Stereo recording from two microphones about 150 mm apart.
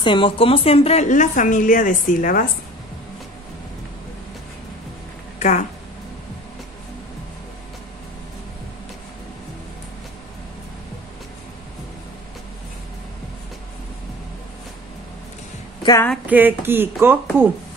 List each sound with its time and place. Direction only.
0.0 s a woman's voice: 35° left (ahead or behind); by 2.4 s 65° left (ahead or behind)
5.4 s speech: 55° left (ahead or behind)
15.8 s speech: 25° left (ahead or behind)
16.3 s speech: 10° right (ahead or behind)